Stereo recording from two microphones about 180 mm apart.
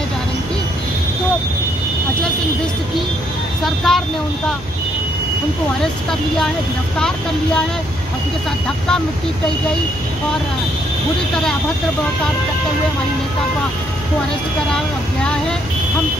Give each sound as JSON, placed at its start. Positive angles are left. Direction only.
{"t": 3.6, "sound": "speech", "side_deg": 0}